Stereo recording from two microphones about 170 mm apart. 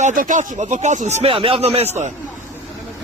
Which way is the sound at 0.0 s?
50° right (ahead or behind).